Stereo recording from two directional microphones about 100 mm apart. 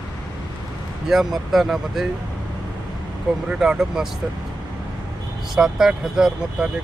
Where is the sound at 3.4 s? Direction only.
10° right (ahead or behind).